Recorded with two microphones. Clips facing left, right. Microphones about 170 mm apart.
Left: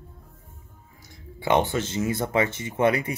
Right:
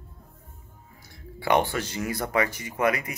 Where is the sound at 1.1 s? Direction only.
20° left (ahead or behind).